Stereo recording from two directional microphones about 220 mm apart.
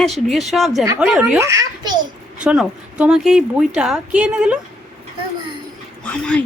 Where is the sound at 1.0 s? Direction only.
Centre (ahead or behind).